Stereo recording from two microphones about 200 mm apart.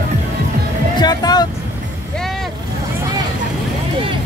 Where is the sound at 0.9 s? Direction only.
20° left (ahead or behind).